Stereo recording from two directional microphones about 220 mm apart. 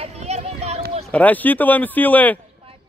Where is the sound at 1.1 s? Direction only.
5° left (ahead or behind).